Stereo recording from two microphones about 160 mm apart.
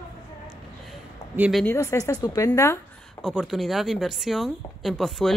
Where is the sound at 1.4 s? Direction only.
Centre (ahead or behind).